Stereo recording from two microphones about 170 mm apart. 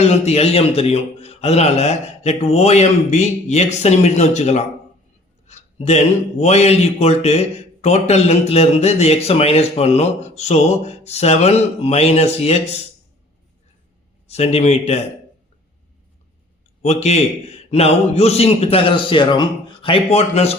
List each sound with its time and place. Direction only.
0.1 s speech: 40° left (ahead or behind)
5.5 s a sound: 40° left (ahead or behind)
6.4 s speech: 40° left (ahead or behind)
14.3 s speech: 40° left (ahead or behind)
16.8 s speech: 40° left (ahead or behind)